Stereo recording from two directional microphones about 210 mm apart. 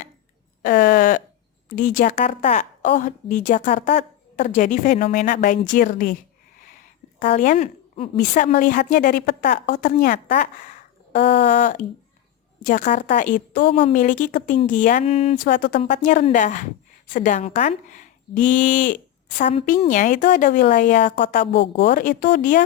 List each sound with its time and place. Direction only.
0.6 s a sound: 50° left (ahead or behind)
1.7 s a woman's voice: 40° left (ahead or behind)
7.2 s a woman's voice: 40° left (ahead or behind)
11.1 s speech: 55° left (ahead or behind)
11.6 s a woman's voice: 40° left (ahead or behind)
15.4 s a woman's voice: 40° left (ahead or behind)
19.4 s a woman's voice: 25° left (ahead or behind)
21.5 s a woman's voice: 55° left (ahead or behind); by 22.6 s 40° left (ahead or behind)